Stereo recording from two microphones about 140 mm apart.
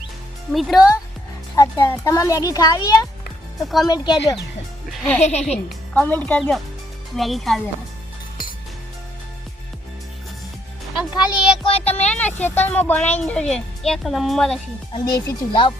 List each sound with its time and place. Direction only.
0.5 s a woman's voice: centre (ahead or behind)
1.5 s a child's voice: 30° left (ahead or behind)
5.2 s a woman's voice: 50° left (ahead or behind)
5.9 s speech: 10° left (ahead or behind)
7.2 s a woman's voice: centre (ahead or behind)
11.1 s a sound: 30° left (ahead or behind)
11.7 s speech: 50° left (ahead or behind)
12.1 s a woman's voice: 10° left (ahead or behind)
14.9 s speech: 30° left (ahead or behind)